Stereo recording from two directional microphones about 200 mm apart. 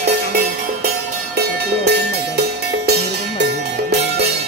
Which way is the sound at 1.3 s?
55° right (ahead or behind).